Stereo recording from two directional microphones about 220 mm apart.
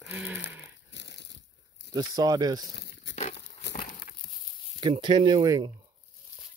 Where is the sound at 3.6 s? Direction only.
50° left (ahead or behind).